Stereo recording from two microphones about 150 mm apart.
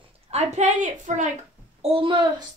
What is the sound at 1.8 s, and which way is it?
Speech, 35° right (ahead or behind).